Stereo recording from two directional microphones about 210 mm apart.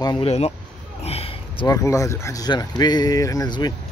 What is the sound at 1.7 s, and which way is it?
Speech, 15° left (ahead or behind).